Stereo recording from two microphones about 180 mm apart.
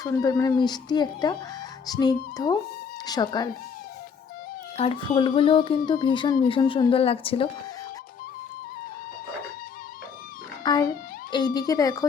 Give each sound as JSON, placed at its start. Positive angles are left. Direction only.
{"t": 0.0, "sound": "speech", "side_deg": 20}
{"t": 4.8, "sound": "speech", "side_deg": 30}
{"t": 10.6, "sound": "speech", "side_deg": 25}